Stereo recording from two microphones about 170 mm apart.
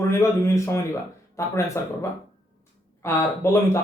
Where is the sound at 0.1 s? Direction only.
15° left (ahead or behind).